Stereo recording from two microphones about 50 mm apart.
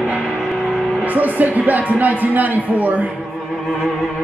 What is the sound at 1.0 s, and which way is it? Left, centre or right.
Music, right.